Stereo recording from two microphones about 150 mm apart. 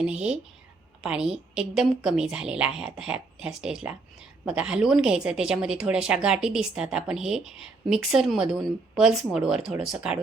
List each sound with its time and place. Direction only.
0.0 s a woman's voice: 5° right (ahead or behind)